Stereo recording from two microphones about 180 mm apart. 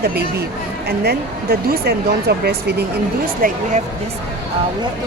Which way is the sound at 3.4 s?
50° right (ahead or behind).